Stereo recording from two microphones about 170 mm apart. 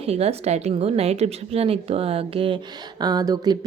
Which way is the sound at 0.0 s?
35° right (ahead or behind).